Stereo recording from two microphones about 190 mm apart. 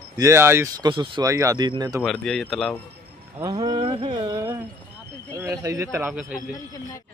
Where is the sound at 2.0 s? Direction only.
Centre (ahead or behind).